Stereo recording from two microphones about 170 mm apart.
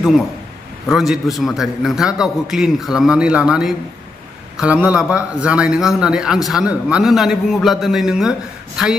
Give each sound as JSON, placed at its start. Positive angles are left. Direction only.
{"t": 0.8, "sound": "speech", "side_deg": 0}